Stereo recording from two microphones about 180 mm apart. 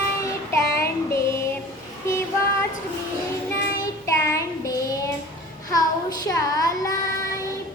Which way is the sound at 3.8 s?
15° left (ahead or behind).